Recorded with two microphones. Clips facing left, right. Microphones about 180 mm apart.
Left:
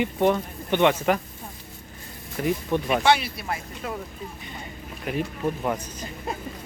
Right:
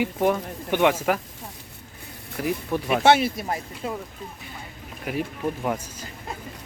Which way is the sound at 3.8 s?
25° right (ahead or behind).